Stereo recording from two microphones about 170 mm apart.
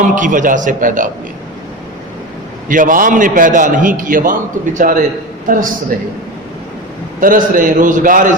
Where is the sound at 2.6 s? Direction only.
50° right (ahead or behind).